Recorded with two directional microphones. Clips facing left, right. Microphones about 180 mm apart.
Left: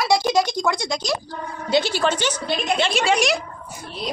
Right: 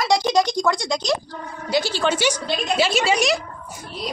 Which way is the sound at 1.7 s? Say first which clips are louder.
Left 2 dB; 20° left (ahead or behind).